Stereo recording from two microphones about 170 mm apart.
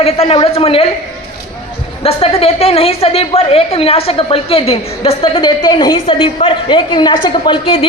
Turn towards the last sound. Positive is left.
turn(degrees=30)  # may be behind; listen again after turning